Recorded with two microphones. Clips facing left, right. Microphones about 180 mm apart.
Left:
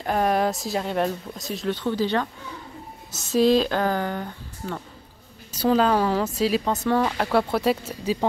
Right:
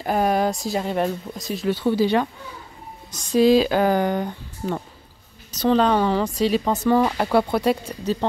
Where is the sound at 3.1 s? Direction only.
5° left (ahead or behind); by 4.8 s 15° right (ahead or behind).